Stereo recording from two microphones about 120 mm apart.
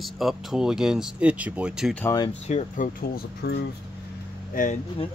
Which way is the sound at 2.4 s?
80° left.